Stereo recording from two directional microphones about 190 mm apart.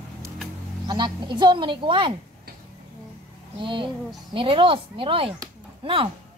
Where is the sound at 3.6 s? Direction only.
25° right (ahead or behind).